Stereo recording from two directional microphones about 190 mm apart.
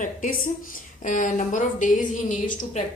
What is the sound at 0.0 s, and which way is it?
A woman's voice, 45° left (ahead or behind).